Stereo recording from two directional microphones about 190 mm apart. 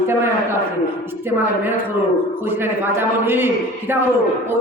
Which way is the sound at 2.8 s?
10° right (ahead or behind).